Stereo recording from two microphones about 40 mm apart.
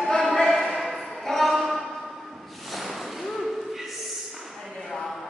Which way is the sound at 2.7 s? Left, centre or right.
Centre.